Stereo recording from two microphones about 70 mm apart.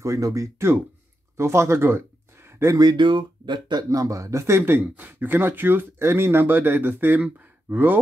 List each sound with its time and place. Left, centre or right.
0.0 s speech: right
3.0 s speech: right
3.9 s speech: right